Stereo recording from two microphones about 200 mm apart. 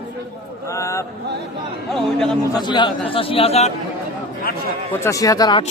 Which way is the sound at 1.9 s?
5° left (ahead or behind).